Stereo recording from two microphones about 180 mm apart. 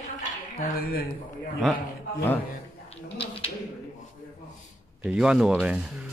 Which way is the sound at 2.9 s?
35° left (ahead or behind).